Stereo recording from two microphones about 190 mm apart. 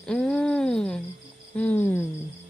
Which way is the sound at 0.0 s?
5° left (ahead or behind).